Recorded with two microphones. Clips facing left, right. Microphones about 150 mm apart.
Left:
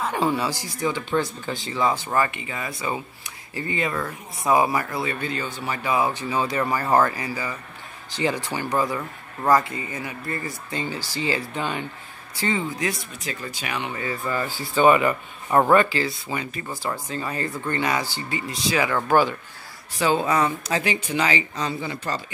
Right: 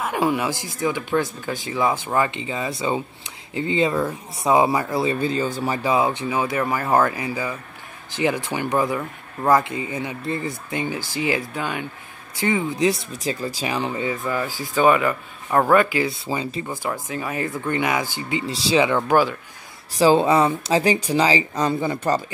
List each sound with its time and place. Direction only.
0.0 s speech: 15° right (ahead or behind)
4.9 s speech: 30° right (ahead or behind)
5.9 s speech: 20° right (ahead or behind)
6.6 s speech: 5° right (ahead or behind)
12.7 s speech: 30° right (ahead or behind)
14.2 s speech: centre (ahead or behind)
15.7 s speech: 10° right (ahead or behind)
16.1 s speech: 30° right (ahead or behind)
16.8 s speech: 15° right (ahead or behind)
18.4 s speech: 30° right (ahead or behind)
18.9 s speech: 15° right (ahead or behind)
19.9 s speech: 35° right (ahead or behind)
21.5 s speech: 50° right (ahead or behind)